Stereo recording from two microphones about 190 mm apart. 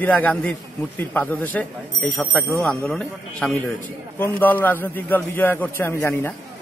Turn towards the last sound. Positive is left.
turn(degrees=10)  # may be behind; listen again after turning